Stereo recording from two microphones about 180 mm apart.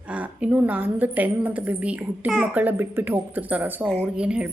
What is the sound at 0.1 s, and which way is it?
A woman's voice, 10° right (ahead or behind).